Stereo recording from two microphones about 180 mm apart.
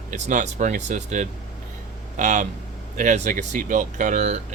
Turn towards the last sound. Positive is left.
turn(degrees=-40)  # may be behind; listen again after turning